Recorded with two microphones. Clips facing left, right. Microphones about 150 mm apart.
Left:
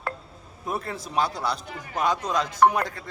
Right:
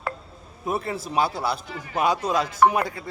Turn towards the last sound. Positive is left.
turn(degrees=-10)  # may be behind; listen again after turning